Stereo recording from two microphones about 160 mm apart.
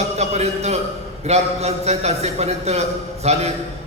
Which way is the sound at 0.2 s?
45° right (ahead or behind).